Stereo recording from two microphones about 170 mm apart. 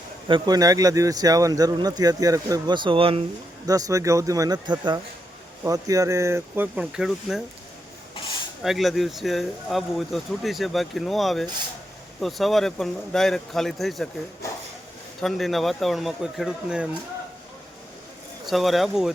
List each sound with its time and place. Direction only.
0.3 s speech: 25° right (ahead or behind)
3.7 s speech: 20° right (ahead or behind); by 7.4 s centre (ahead or behind)
8.1 s a sound: 30° left (ahead or behind)
8.6 s speech: centre (ahead or behind)
15.2 s speech: centre (ahead or behind)
18.4 s speech: centre (ahead or behind)